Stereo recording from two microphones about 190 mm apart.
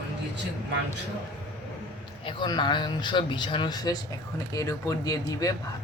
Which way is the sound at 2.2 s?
25° left (ahead or behind).